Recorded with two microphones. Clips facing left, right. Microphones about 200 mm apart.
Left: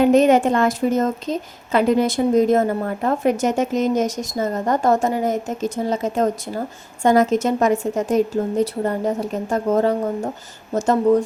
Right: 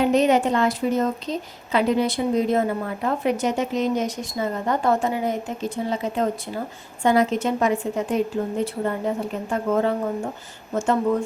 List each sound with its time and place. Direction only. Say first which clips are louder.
0.0 s a woman's voice: left 4 dB; 50° left (ahead or behind)